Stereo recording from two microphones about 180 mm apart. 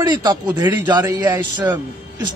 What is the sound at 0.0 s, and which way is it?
Speech, 20° right (ahead or behind).